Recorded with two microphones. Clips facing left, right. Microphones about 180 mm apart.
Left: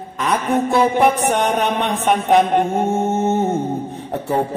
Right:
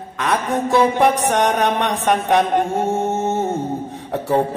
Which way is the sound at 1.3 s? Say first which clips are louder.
Right 1 dB; 70° right (ahead or behind).